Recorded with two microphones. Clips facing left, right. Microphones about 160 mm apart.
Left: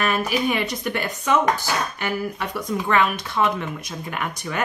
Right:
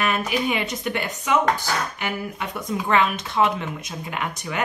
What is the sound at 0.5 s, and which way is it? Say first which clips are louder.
A woman's voice: left 1 dB; 20° right (ahead or behind).